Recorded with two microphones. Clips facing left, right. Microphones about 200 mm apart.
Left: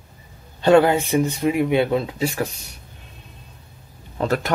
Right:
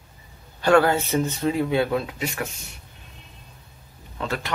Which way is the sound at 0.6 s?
20° left (ahead or behind).